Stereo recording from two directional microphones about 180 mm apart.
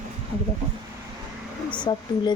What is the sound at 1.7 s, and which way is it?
Speech, 25° left (ahead or behind).